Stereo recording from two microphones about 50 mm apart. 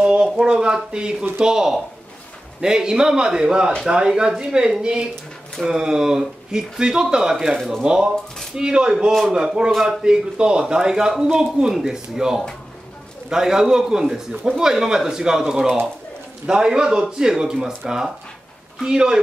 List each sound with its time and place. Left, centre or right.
0.0 s speech: centre